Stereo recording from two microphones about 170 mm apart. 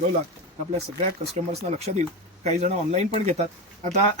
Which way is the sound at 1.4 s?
40° right (ahead or behind).